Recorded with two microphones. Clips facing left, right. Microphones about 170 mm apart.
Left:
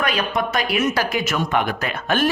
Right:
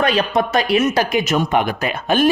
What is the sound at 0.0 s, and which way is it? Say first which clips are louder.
A man's voice: right 5 dB; 30° right (ahead or behind).